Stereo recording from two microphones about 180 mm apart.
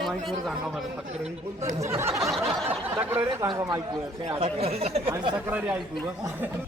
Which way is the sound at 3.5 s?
20° right (ahead or behind).